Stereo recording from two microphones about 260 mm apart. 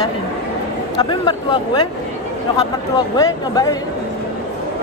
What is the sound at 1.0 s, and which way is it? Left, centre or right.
Speech, centre.